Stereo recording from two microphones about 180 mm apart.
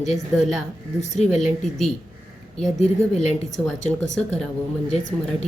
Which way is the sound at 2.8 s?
40° left (ahead or behind).